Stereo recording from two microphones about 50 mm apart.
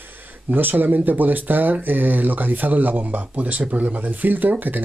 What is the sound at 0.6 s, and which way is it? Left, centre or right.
Speech, right.